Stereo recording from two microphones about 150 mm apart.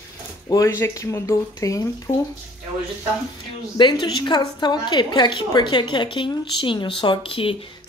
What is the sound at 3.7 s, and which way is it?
A woman's voice, 30° left (ahead or behind).